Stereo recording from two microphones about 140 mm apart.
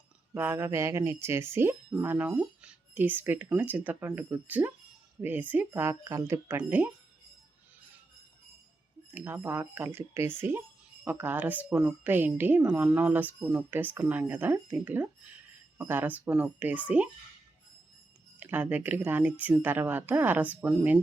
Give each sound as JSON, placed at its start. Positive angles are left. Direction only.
{"t": 0.3, "sound": "a sound", "side_deg": -15}
{"t": 1.2, "sound": "a woman's voice", "side_deg": -20}
{"t": 9.1, "sound": "a woman's voice", "side_deg": -15}
{"t": 18.3, "sound": "a woman's voice", "side_deg": -15}